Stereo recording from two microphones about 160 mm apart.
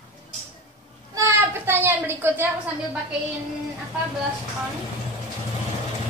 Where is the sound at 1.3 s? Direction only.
15° right (ahead or behind).